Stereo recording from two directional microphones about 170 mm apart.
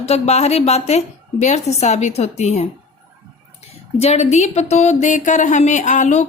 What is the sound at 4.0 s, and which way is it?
A woman's voice, 40° left (ahead or behind).